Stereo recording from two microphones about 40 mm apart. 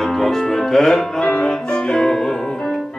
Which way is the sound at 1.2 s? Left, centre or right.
Left.